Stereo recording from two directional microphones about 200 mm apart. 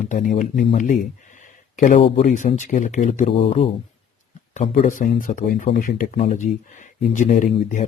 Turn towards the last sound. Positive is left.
turn(degrees=40)  # may be behind; listen again after turning